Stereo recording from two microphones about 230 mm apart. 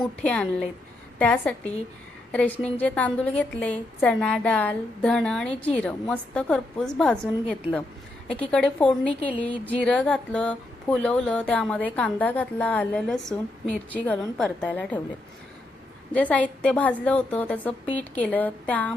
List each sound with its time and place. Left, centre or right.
0.0 s a woman's voice: centre
8.4 s a woman's voice: centre
16.1 s a woman's voice: centre